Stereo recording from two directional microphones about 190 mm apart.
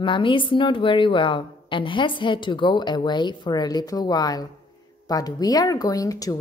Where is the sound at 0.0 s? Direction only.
25° left (ahead or behind).